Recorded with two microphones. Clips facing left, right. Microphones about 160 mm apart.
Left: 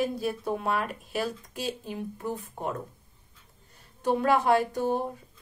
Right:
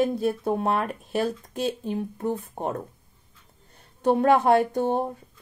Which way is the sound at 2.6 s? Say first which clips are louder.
Right 1 dB; 50° right (ahead or behind).